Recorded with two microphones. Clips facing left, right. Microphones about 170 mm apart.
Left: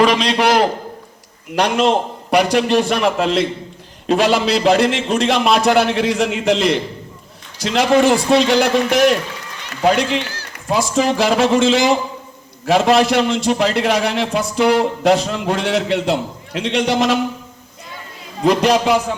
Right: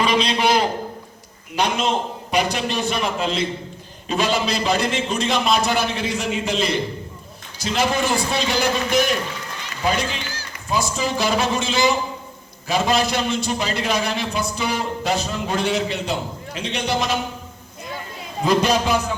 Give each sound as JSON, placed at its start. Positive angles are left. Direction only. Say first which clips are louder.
{"t": 0.0, "sound": "a man's voice", "louder": "left 5 dB", "side_deg": 90}
{"t": 18.4, "sound": "a man's voice", "louder": "left 5 dB", "side_deg": 90}